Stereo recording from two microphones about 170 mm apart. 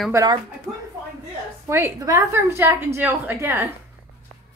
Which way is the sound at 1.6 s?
15° right (ahead or behind).